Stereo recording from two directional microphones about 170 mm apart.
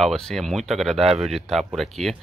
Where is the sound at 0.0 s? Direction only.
Centre (ahead or behind).